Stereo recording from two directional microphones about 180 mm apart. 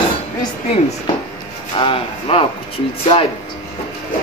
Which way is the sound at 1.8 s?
30° left (ahead or behind).